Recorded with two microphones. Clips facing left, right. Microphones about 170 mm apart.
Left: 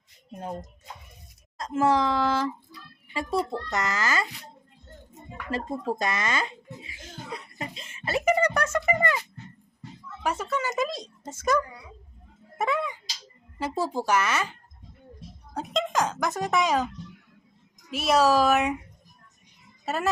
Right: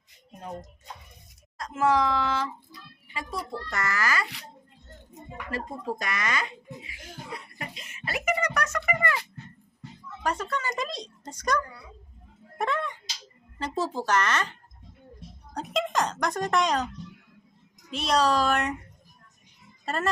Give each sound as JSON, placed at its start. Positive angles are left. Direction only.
{"t": 1.5, "sound": "speech", "side_deg": 25}
{"t": 3.2, "sound": "a child's voice", "side_deg": 25}
{"t": 5.5, "sound": "a child's voice", "side_deg": 25}
{"t": 6.8, "sound": "music", "side_deg": 25}
{"t": 10.2, "sound": "speech", "side_deg": 5}
{"t": 15.5, "sound": "speech", "side_deg": 0}
{"t": 17.9, "sound": "speech", "side_deg": 5}
{"t": 19.8, "sound": "speech", "side_deg": 5}